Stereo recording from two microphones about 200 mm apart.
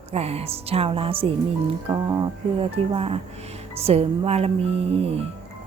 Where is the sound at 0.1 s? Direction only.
30° right (ahead or behind).